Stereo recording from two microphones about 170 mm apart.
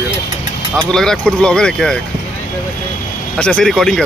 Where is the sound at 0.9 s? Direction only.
5° left (ahead or behind).